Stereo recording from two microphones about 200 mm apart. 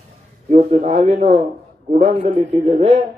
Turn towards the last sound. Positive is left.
turn(degrees=-35)  # may be behind; listen again after turning